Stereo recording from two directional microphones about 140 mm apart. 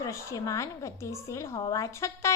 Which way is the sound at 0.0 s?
20° left (ahead or behind).